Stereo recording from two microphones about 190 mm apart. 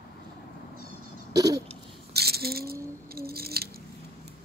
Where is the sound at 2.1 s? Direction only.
55° right (ahead or behind).